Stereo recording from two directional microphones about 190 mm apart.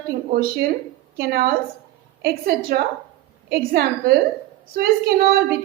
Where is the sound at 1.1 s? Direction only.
55° right (ahead or behind).